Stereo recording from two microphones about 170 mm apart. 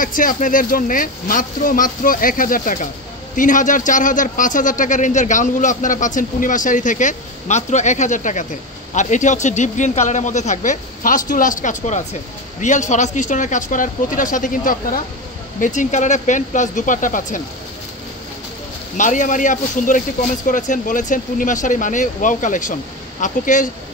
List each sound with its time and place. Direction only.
0.0 s a man's voice: 50° left (ahead or behind)
18.9 s a man's voice: 50° left (ahead or behind)